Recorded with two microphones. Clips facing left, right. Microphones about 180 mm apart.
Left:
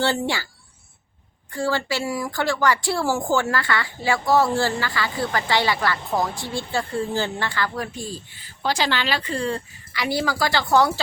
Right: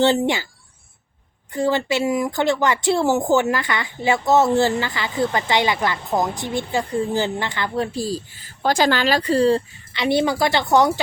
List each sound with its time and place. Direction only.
0.0 s a woman's voice: 20° right (ahead or behind)
1.5 s a woman's voice: 20° right (ahead or behind)
7.9 s speech: 35° right (ahead or behind); by 11.0 s 20° right (ahead or behind)